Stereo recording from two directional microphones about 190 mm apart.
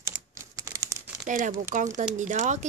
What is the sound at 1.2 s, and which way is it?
Speech, 40° right (ahead or behind).